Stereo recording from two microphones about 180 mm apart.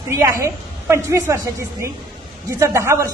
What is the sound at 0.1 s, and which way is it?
A woman's voice, 15° right (ahead or behind).